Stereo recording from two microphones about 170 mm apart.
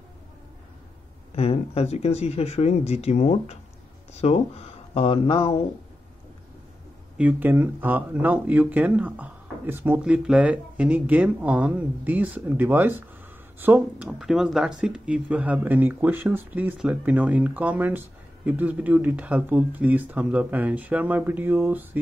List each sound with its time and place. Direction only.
1.3 s speech: 35° left (ahead or behind)
7.2 s speech: 10° right (ahead or behind)